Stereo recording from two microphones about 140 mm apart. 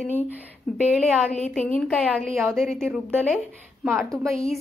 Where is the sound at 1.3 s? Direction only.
10° left (ahead or behind).